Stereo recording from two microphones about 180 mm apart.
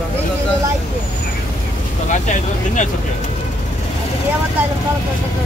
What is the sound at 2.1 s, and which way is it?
Speech, 45° left (ahead or behind).